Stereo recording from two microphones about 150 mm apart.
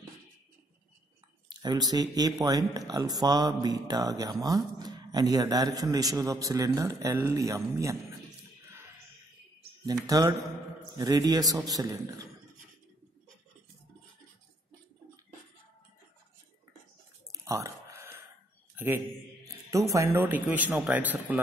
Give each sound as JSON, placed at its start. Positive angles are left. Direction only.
{"t": 1.5, "sound": "speech", "side_deg": -25}
{"t": 9.8, "sound": "speech", "side_deg": -25}
{"t": 17.3, "sound": "a sound", "side_deg": -20}
{"t": 19.9, "sound": "speech", "side_deg": -20}